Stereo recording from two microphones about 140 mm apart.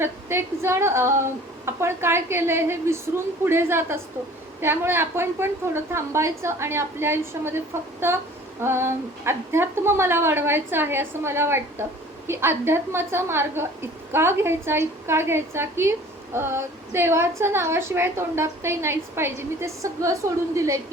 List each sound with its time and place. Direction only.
0.0 s a woman's voice: 15° right (ahead or behind)